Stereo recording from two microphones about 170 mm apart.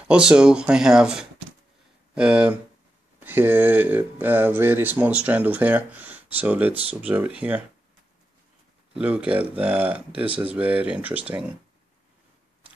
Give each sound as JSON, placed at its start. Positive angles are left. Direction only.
{"t": 0.1, "sound": "speech", "side_deg": -5}
{"t": 8.9, "sound": "speech", "side_deg": -5}